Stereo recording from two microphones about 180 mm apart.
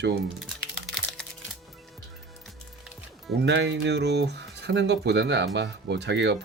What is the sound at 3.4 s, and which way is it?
Speech, 70° right (ahead or behind).